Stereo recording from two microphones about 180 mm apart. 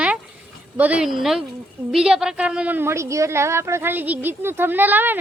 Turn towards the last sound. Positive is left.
turn(degrees=-10)  # may be behind; listen again after turning